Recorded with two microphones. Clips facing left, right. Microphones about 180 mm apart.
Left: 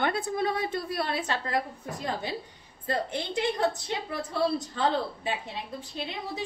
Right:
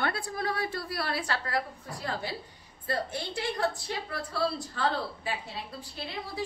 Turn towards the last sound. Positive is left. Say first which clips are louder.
# left 2 dB
turn(degrees=20)  # may be behind; listen again after turning